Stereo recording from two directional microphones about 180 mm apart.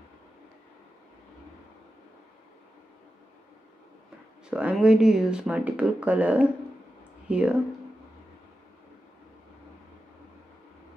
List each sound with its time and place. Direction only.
4.5 s speech: 5° right (ahead or behind)